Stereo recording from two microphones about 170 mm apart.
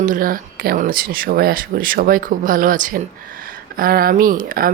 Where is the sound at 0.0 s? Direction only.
50° right (ahead or behind).